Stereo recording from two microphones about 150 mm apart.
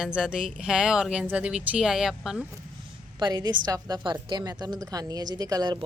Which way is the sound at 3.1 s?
30° right (ahead or behind).